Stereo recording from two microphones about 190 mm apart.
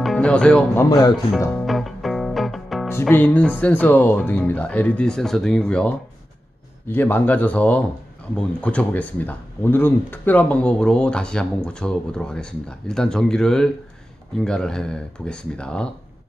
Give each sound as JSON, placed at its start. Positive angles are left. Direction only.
{"t": 0.0, "sound": "speech", "side_deg": 5}
{"t": 0.8, "sound": "speech", "side_deg": 20}
{"t": 1.7, "sound": "music", "side_deg": 0}
{"t": 2.9, "sound": "speech", "side_deg": 10}